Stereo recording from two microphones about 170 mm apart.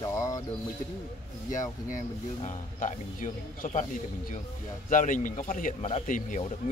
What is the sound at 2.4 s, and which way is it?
Speech, 45° left (ahead or behind).